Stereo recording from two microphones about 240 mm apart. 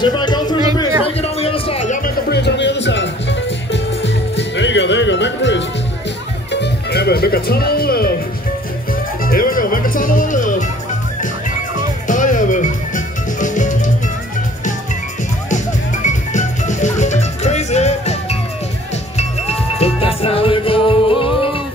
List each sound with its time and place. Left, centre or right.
0.0 s a sound: centre
1.0 s music: left
9.2 s music: left
12.1 s music: left
15.5 s music: left